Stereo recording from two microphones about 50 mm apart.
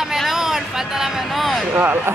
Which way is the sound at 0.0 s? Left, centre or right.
Centre.